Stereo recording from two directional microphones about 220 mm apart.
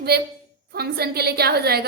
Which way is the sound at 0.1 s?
45° right (ahead or behind).